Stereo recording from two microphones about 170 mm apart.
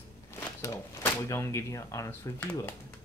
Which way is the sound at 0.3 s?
15° left (ahead or behind).